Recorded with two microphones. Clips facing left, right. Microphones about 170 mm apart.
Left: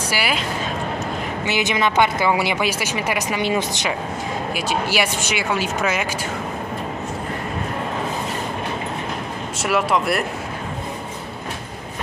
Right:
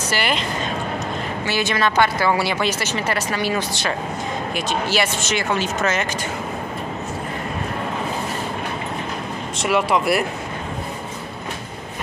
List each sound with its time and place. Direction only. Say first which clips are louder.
0.1 s speech: right 2 dB; 5° left (ahead or behind)
1.4 s speech: even; 20° left (ahead or behind)
4.6 s speech: even; 10° left (ahead or behind)
9.6 s speech: right 1 dB; centre (ahead or behind)